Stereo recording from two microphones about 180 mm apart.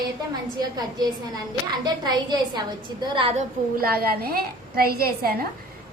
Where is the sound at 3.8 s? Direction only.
55° right (ahead or behind).